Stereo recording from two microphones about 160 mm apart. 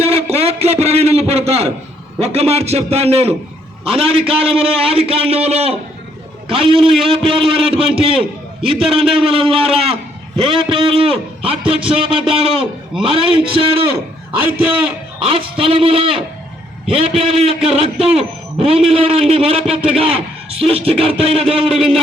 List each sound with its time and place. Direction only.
0.1 s a sound: 40° right (ahead or behind)
2.1 s a man's voice: 40° right (ahead or behind)
14.4 s a man's voice: 10° right (ahead or behind)
15.2 s a man's voice: 35° right (ahead or behind)